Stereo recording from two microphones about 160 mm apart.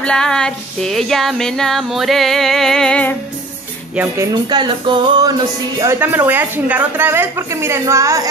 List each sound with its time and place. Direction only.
0.0 s a sound: 5° left (ahead or behind)
3.9 s music: 15° right (ahead or behind)
5.8 s a woman's voice: 15° right (ahead or behind)